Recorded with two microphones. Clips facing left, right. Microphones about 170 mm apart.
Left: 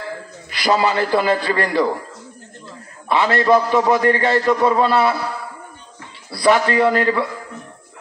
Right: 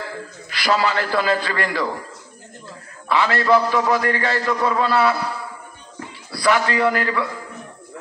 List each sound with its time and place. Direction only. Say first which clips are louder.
0.5 s a man's voice: left 3 dB; 20° left (ahead or behind)
3.1 s a man's voice: left 2 dB; 20° left (ahead or behind)
6.4 s a man's voice: left 3 dB; 25° left (ahead or behind)